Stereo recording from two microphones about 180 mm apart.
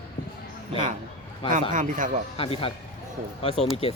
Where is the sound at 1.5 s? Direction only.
45° right (ahead or behind).